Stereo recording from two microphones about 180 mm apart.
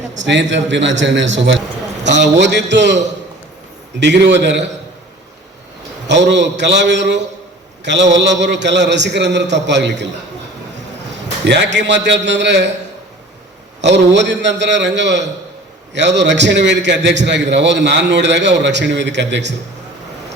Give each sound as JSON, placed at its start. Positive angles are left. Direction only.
{"t": 0.2, "sound": "a man's voice", "side_deg": -85}
{"t": 2.1, "sound": "a man's voice", "side_deg": -75}
{"t": 6.1, "sound": "a man's voice", "side_deg": -75}
{"t": 11.1, "sound": "a man's voice", "side_deg": -75}
{"t": 13.8, "sound": "a man's voice", "side_deg": -80}